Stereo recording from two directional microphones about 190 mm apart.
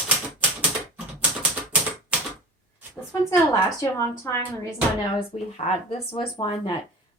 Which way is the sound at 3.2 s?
20° left (ahead or behind).